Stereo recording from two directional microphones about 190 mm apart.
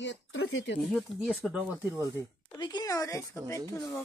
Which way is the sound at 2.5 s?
20° left (ahead or behind).